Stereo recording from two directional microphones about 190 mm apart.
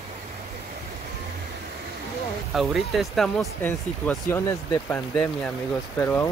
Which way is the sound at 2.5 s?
Centre (ahead or behind).